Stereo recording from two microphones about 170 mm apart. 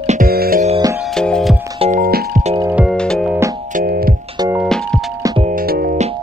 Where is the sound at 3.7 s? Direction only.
55° right (ahead or behind).